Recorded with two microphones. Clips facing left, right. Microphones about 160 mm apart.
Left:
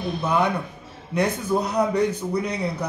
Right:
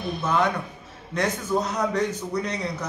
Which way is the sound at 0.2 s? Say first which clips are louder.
Left 1 dB; 10° left (ahead or behind).